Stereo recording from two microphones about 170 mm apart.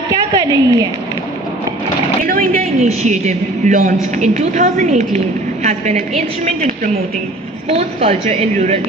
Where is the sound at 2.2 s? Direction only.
55° right (ahead or behind).